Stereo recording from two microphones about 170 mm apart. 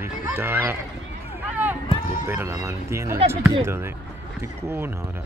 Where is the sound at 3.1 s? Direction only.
35° right (ahead or behind).